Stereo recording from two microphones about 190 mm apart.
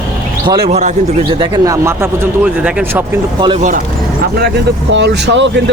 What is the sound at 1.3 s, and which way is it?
Speech, 25° right (ahead or behind).